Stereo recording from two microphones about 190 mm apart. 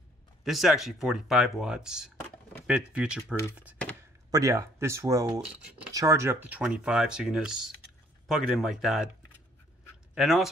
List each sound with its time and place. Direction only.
0.4 s speech: centre (ahead or behind)
4.3 s speech: 15° right (ahead or behind)
10.1 s speech: centre (ahead or behind)